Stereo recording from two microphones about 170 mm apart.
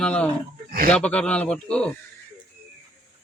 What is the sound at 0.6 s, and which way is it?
Speech, 60° right (ahead or behind).